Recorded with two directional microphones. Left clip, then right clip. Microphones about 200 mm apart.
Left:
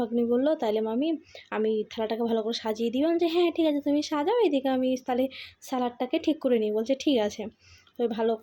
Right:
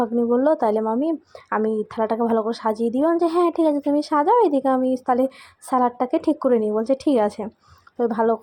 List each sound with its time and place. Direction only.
0.0 s a woman's voice: 10° right (ahead or behind)